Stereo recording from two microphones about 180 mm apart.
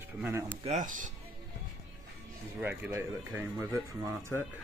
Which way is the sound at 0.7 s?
45° right (ahead or behind).